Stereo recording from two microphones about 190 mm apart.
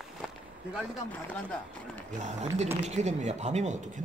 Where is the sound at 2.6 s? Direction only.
35° right (ahead or behind).